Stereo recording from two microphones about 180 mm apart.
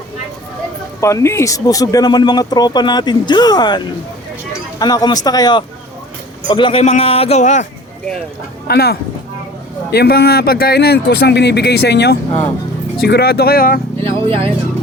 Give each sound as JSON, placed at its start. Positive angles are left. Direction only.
{"t": 1.0, "sound": "a man's voice", "side_deg": 15}
{"t": 8.6, "sound": "speech", "side_deg": 60}
{"t": 14.0, "sound": "speech", "side_deg": -30}